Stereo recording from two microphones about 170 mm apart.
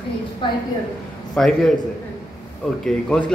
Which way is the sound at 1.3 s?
5° left (ahead or behind).